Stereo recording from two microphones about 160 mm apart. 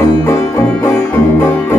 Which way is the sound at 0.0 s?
15° left (ahead or behind).